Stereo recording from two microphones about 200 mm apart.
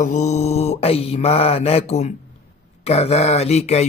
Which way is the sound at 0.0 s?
35° left (ahead or behind).